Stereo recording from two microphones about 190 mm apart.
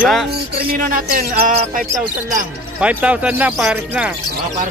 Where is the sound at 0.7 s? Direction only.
45° right (ahead or behind).